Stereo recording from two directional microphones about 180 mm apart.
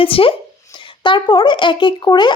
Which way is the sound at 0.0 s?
30° left (ahead or behind).